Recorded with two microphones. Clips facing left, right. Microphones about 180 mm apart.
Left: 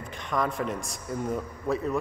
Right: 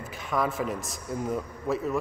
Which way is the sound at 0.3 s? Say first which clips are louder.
Even; 5° right (ahead or behind).